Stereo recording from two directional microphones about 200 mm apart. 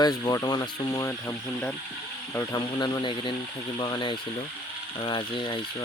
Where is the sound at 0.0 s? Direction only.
20° left (ahead or behind).